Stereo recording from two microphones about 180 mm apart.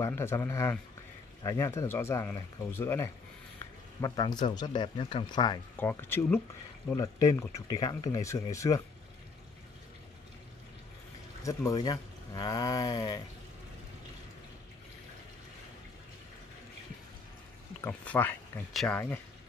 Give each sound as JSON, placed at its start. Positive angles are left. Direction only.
{"t": 0.0, "sound": "speech", "side_deg": 15}
{"t": 5.8, "sound": "speech", "side_deg": 10}
{"t": 11.4, "sound": "speech", "side_deg": 20}
{"t": 17.8, "sound": "speech", "side_deg": 10}